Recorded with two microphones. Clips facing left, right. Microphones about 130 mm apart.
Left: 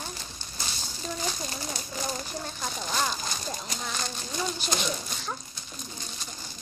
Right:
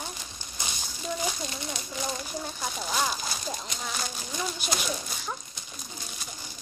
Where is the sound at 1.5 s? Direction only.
40° left (ahead or behind).